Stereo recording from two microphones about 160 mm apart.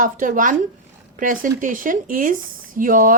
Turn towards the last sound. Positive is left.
turn(degrees=-60)  # may be behind; listen again after turning